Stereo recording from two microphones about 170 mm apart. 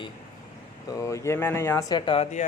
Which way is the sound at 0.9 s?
15° left (ahead or behind).